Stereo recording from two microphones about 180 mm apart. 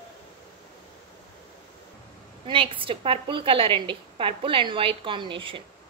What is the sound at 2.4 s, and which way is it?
A woman's voice, 30° right (ahead or behind).